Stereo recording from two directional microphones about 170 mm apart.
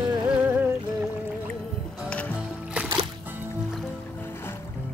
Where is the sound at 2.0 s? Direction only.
10° left (ahead or behind).